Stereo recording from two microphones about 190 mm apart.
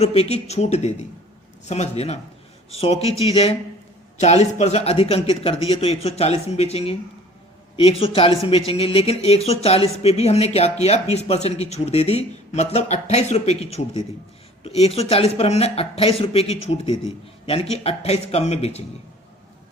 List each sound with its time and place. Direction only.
0.0 s speech: 35° left (ahead or behind)